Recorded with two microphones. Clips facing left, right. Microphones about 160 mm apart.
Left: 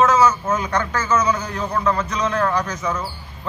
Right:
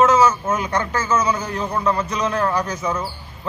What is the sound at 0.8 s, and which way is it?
A man's voice, 25° right (ahead or behind).